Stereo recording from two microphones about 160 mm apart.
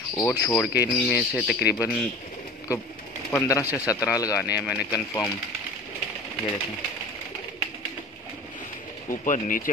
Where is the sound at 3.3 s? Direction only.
20° left (ahead or behind).